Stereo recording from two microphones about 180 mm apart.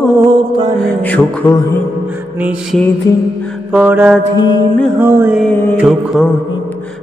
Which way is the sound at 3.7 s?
5° right (ahead or behind).